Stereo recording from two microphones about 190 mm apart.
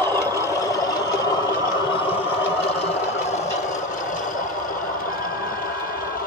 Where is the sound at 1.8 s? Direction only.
30° left (ahead or behind); by 4.7 s 45° left (ahead or behind).